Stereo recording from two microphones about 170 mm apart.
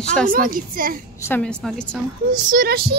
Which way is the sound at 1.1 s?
15° left (ahead or behind).